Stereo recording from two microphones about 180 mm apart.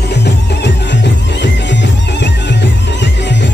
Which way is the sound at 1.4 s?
75° left (ahead or behind).